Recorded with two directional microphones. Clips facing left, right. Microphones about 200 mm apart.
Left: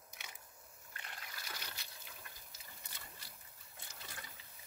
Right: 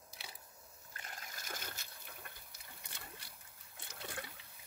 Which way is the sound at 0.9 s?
40° right (ahead or behind).